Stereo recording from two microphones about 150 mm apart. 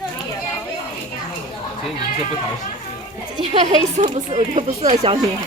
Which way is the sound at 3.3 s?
45° right (ahead or behind).